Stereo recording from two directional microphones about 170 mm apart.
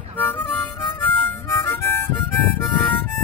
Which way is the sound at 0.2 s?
10° left (ahead or behind).